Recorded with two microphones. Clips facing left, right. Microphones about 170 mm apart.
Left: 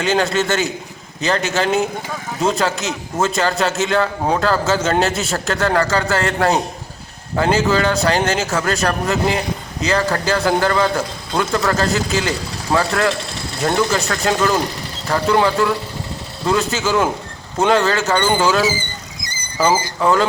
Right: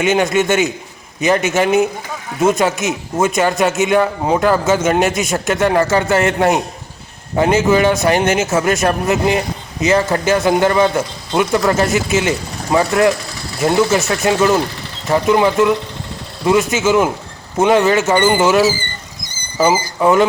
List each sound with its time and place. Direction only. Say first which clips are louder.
0.0 s a man's voice: right 3 dB; 20° right (ahead or behind)
19.3 s speech: right 2 dB; 10° right (ahead or behind)